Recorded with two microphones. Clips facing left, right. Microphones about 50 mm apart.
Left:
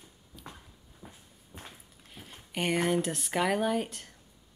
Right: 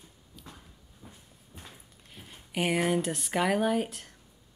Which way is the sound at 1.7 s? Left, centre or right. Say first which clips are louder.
Even; centre.